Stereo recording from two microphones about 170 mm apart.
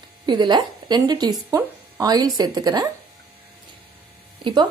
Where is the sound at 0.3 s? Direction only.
25° right (ahead or behind).